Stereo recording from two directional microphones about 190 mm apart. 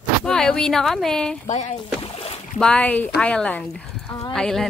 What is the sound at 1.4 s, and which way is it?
Speech, 40° left (ahead or behind).